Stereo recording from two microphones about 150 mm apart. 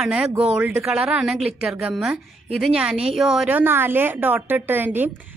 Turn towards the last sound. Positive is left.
turn(degrees=-10)  # may be behind; listen again after turning